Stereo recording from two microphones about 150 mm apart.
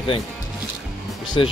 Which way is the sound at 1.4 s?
35° left (ahead or behind).